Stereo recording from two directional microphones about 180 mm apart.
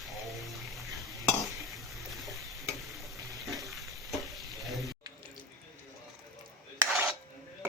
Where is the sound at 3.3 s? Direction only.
20° right (ahead or behind).